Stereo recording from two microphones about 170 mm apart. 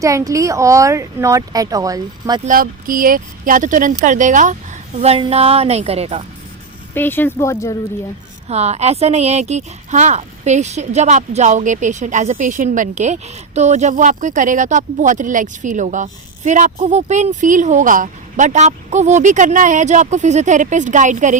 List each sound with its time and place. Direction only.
0.0 s speech: 20° right (ahead or behind)
2.5 s speech: 55° right (ahead or behind)
4.9 s a woman's voice: 35° right (ahead or behind)
6.9 s speech: 10° left (ahead or behind)
8.4 s speech: 40° right (ahead or behind)